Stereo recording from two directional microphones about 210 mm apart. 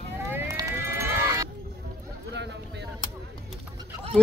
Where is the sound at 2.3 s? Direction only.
55° right (ahead or behind).